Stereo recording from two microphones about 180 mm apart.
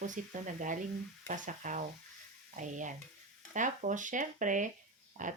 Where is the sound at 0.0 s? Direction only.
45° right (ahead or behind).